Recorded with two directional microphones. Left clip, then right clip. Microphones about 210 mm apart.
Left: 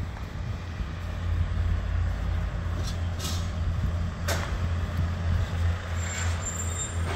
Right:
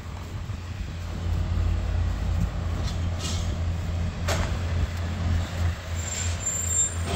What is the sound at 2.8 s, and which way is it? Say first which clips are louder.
Vehicle: right 2 dB; 50° left (ahead or behind).